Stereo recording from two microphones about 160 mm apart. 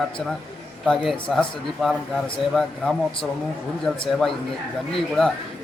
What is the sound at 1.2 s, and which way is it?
A man's voice, 5° left (ahead or behind).